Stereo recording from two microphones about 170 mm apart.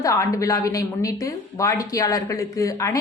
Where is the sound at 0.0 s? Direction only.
20° left (ahead or behind).